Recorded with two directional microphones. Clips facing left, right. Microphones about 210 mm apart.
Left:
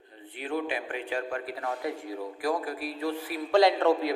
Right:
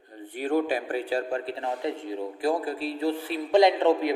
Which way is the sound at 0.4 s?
40° right (ahead or behind).